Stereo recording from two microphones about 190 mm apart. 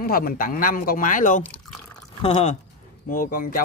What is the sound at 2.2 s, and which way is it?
Speech, 30° left (ahead or behind).